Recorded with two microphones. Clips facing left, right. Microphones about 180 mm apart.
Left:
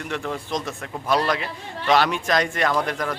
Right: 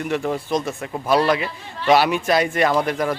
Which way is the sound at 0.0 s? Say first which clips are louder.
Right 6 dB; 10° right (ahead or behind).